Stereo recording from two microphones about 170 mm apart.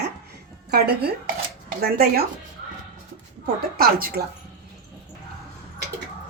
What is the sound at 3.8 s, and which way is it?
Speech, 60° right (ahead or behind).